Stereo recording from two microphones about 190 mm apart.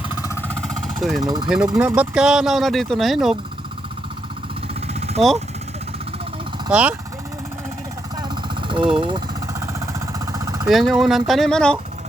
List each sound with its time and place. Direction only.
0.4 s vehicle: 5° left (ahead or behind)
1.5 s speech: 5° right (ahead or behind)
4.7 s vehicle: 35° right (ahead or behind)
6.7 s speech: 5° right (ahead or behind)
8.6 s jackhammer: 25° right (ahead or behind)
10.7 s speech: centre (ahead or behind)